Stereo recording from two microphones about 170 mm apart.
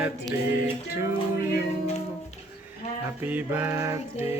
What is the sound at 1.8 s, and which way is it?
Music, 40° left (ahead or behind).